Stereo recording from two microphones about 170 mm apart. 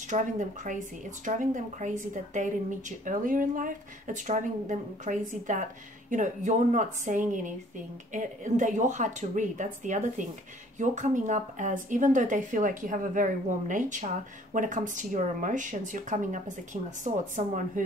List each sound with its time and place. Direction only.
0.1 s a woman's voice: 45° right (ahead or behind)